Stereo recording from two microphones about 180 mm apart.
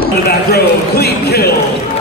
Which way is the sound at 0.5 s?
60° left (ahead or behind).